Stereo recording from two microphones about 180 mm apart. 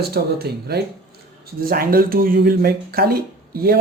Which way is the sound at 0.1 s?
60° right (ahead or behind).